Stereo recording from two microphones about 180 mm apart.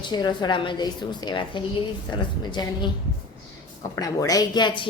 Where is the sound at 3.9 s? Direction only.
20° left (ahead or behind).